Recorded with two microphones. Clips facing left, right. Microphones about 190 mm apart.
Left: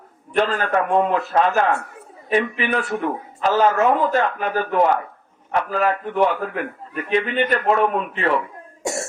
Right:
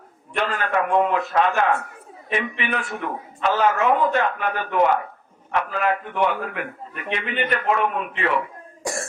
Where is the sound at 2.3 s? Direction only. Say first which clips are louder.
Left 5 dB; 35° left (ahead or behind).